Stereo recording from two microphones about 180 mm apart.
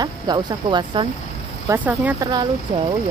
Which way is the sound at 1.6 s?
10° right (ahead or behind).